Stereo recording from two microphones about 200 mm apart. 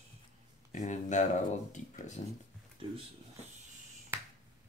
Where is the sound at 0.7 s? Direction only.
40° left (ahead or behind).